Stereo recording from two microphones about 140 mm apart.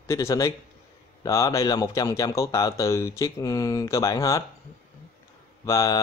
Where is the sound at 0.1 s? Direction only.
20° left (ahead or behind).